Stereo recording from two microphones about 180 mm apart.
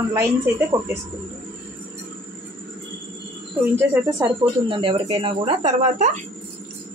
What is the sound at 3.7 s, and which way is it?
A woman's voice, 15° right (ahead or behind).